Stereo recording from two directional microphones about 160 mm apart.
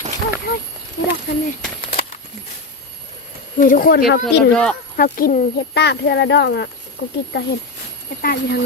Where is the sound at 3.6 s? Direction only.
65° left (ahead or behind); by 4.4 s 85° left.